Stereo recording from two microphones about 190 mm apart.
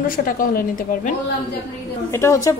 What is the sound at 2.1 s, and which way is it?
Speech, 15° left (ahead or behind).